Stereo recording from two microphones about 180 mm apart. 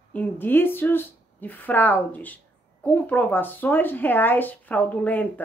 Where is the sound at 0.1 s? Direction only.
10° left (ahead or behind).